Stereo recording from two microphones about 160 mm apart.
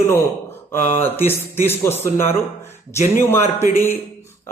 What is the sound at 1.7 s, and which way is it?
Speech, 15° left (ahead or behind).